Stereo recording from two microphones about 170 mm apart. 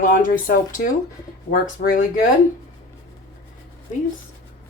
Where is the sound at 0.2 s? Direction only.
55° left (ahead or behind).